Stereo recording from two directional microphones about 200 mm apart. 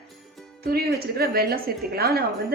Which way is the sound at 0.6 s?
50° right (ahead or behind).